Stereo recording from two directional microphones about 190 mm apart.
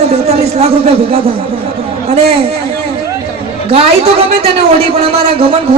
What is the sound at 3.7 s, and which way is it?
A woman's voice, 30° right (ahead or behind).